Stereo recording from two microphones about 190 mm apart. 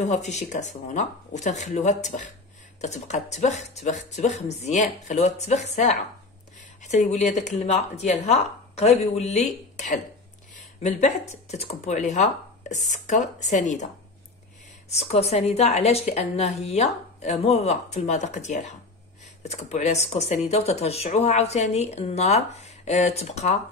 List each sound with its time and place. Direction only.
0.0 s speech: 40° left (ahead or behind)
14.9 s speech: 35° left (ahead or behind)